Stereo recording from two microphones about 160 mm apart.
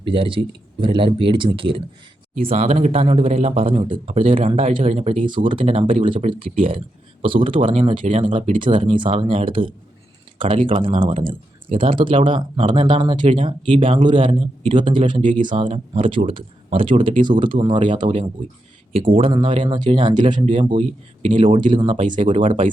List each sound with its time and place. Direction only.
0.0 s speech: 35° right (ahead or behind)